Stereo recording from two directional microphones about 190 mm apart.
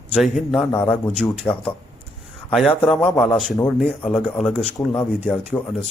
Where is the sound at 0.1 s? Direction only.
Centre (ahead or behind).